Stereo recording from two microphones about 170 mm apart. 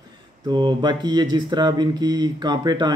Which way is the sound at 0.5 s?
25° right (ahead or behind).